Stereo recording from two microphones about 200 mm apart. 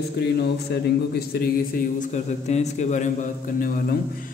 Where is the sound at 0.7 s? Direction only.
50° left (ahead or behind).